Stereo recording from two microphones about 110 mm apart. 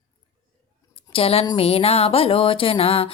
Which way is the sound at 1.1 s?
60° left (ahead or behind).